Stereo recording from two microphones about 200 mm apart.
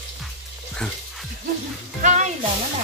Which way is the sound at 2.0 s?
35° right (ahead or behind).